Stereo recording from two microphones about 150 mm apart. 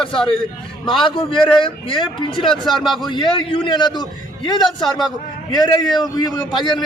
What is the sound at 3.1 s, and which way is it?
A man's voice, 35° left (ahead or behind).